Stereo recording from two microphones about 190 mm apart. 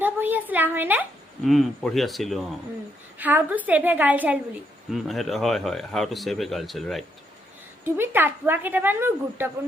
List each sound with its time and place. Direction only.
0.0 s a woman's voice: 10° right (ahead or behind)
7.9 s a woman's voice: 10° right (ahead or behind)